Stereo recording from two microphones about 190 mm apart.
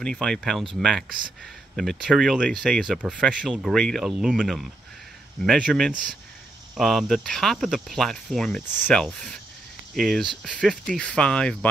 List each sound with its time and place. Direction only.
0.0 s speech: 5° left (ahead or behind)